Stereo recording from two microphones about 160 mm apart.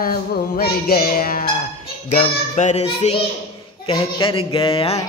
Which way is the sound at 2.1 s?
40° left (ahead or behind).